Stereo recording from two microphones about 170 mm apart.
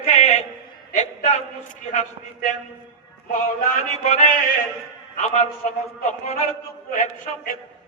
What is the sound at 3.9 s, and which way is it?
Music, 40° left (ahead or behind).